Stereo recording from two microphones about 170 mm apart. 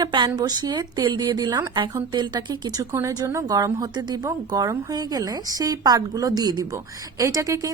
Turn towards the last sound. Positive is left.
turn(degrees=-20)  # may be behind; listen again after turning